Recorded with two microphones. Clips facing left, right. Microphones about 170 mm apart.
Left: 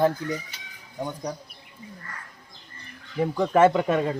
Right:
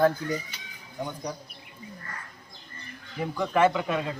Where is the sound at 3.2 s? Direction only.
45° left (ahead or behind).